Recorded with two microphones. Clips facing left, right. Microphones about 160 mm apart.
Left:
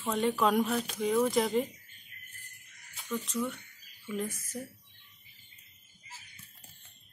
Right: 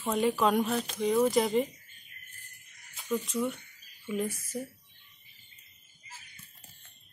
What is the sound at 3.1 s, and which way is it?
A woman's voice, 10° right (ahead or behind).